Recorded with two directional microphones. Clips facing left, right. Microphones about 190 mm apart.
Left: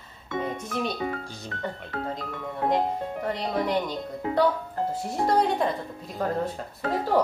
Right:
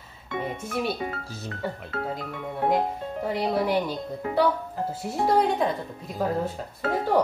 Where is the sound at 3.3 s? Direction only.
5° right (ahead or behind).